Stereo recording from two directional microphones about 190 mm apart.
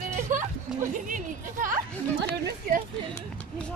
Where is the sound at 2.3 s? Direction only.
45° right (ahead or behind).